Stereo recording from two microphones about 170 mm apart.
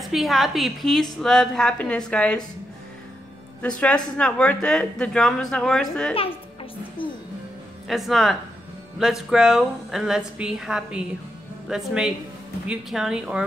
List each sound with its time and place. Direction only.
0.0 s speech: centre (ahead or behind)
3.6 s speech: 5° left (ahead or behind)
6.1 s music: 30° left (ahead or behind)
7.9 s speech: centre (ahead or behind)